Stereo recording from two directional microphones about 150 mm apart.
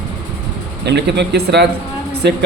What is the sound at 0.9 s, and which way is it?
A man's voice, 90° right.